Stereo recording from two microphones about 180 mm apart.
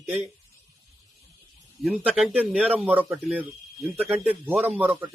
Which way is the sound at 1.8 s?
Centre (ahead or behind).